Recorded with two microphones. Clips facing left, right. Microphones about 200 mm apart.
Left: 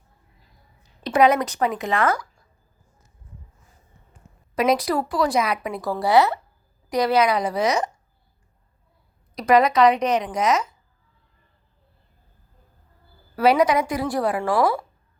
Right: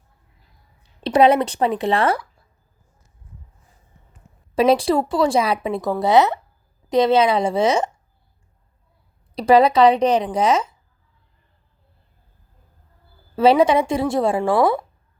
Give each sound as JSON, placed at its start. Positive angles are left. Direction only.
{"t": 1.0, "sound": "speech", "side_deg": -30}
{"t": 4.5, "sound": "speech", "side_deg": -30}
{"t": 9.3, "sound": "speech", "side_deg": -30}
{"t": 13.3, "sound": "speech", "side_deg": -25}